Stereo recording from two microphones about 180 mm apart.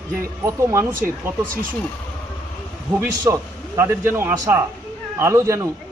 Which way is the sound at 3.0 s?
15° right (ahead or behind).